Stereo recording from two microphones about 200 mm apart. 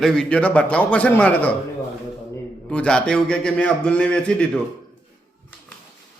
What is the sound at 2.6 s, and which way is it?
Speech, 5° left (ahead or behind).